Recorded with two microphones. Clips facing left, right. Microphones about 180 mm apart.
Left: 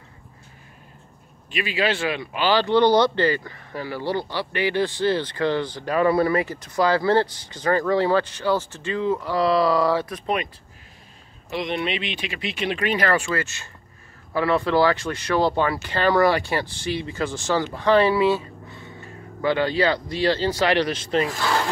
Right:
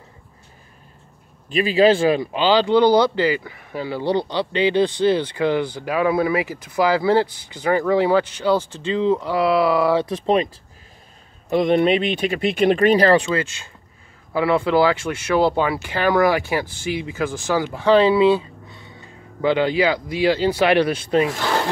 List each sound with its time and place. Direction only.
1.6 s speech: 40° right (ahead or behind)
2.3 s speech: 15° right (ahead or behind)
9.4 s speech: 5° right (ahead or behind)
9.9 s speech: 25° right (ahead or behind)
11.5 s speech: 50° right (ahead or behind)
13.1 s speech: 20° right (ahead or behind)